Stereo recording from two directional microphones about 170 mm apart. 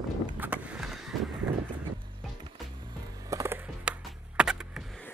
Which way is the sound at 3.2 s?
15° right (ahead or behind).